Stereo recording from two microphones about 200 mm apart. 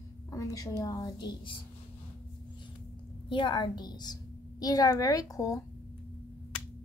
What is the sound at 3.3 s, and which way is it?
A woman's voice, 25° left (ahead or behind).